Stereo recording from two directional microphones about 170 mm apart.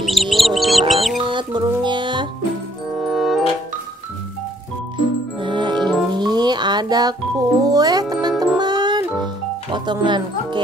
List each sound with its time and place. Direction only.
0.0 s bird: centre (ahead or behind)
1.2 s music: 30° right (ahead or behind)
3.0 s music: centre (ahead or behind)
4.9 s music: 30° right (ahead or behind)